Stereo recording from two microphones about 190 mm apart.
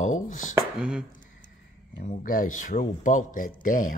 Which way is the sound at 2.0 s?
45° left (ahead or behind).